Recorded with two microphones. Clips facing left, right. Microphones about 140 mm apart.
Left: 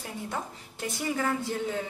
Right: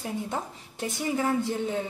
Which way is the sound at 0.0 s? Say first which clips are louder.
Right 3 dB; 25° right (ahead or behind).